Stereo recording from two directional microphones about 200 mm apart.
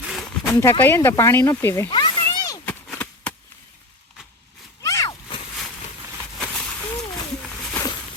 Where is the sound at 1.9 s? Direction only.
20° left (ahead or behind).